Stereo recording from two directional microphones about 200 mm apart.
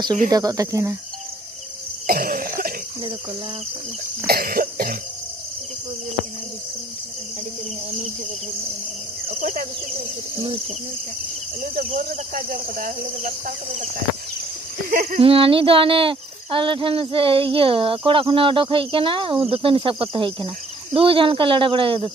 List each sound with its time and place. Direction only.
0.3 s speech: 20° right (ahead or behind)
2.0 s cough: 45° right (ahead or behind)
4.3 s cough: 50° right (ahead or behind)
9.3 s speech: 45° right (ahead or behind)
10.4 s cricket: 25° right (ahead or behind)
11.6 s speech: 45° right (ahead or behind)
14.9 s speech: 45° right (ahead or behind)
15.1 s cricket: 25° right (ahead or behind)